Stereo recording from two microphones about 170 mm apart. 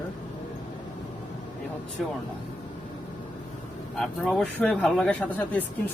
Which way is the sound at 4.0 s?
Centre (ahead or behind).